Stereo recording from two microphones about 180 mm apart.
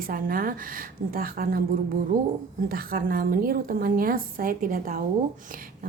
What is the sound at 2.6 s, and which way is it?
A woman's voice, 55° right (ahead or behind).